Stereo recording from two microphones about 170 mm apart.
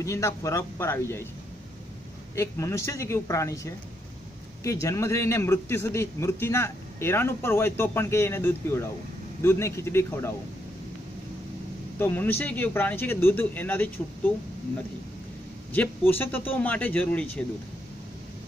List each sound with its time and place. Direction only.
0.0 s a man's voice: 20° left (ahead or behind)
2.3 s a man's voice: 15° left (ahead or behind)
12.0 s a man's voice: 10° left (ahead or behind)
15.7 s a man's voice: 10° left (ahead or behind)